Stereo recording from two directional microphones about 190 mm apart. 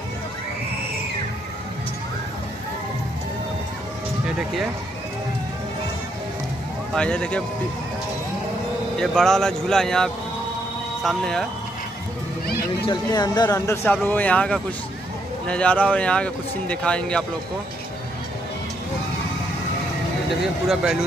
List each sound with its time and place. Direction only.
6.9 s speech: 5° left (ahead or behind)
8.9 s speech: centre (ahead or behind)
12.8 s speech: 20° left (ahead or behind)
14.0 s speech: 10° left (ahead or behind)
20.6 s speech: centre (ahead or behind)